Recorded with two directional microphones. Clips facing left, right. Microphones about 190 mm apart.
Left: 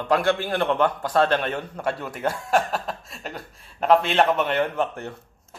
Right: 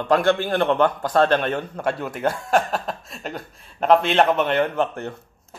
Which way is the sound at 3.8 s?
5° left (ahead or behind).